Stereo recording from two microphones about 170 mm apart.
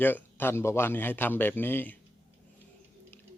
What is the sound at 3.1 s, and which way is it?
Chewing, 15° left (ahead or behind).